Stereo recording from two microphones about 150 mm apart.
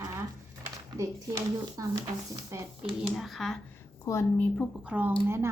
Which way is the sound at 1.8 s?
25° right (ahead or behind).